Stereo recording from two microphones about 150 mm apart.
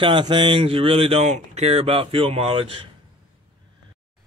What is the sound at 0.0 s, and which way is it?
Speech, 35° right (ahead or behind).